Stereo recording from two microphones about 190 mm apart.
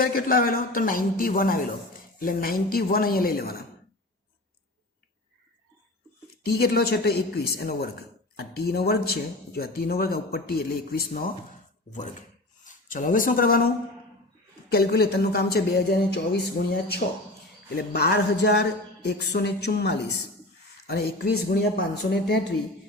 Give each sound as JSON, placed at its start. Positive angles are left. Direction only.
{"t": 0.0, "sound": "speech", "side_deg": 50}
{"t": 6.4, "sound": "speech", "side_deg": 55}
{"t": 11.9, "sound": "speech", "side_deg": 40}
{"t": 14.7, "sound": "speech", "side_deg": 55}